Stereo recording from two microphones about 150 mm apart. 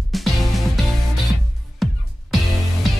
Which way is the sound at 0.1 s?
Centre (ahead or behind).